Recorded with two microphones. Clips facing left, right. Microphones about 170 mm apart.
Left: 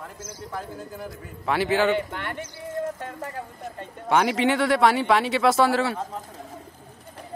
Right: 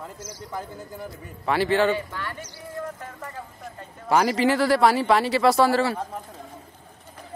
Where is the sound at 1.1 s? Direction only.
Centre (ahead or behind).